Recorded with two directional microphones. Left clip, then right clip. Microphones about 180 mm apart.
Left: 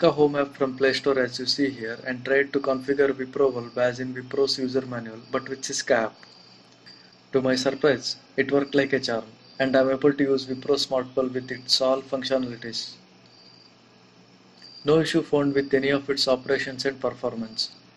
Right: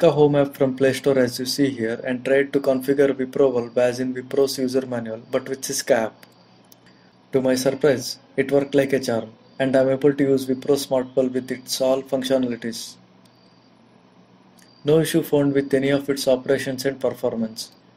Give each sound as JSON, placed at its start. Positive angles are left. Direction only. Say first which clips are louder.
{"t": 0.0, "sound": "speech", "louder": "right 4 dB", "side_deg": -45}
{"t": 7.2, "sound": "speech", "louder": "right 3 dB", "side_deg": -45}
{"t": 14.9, "sound": "speech", "louder": "right 3 dB", "side_deg": -45}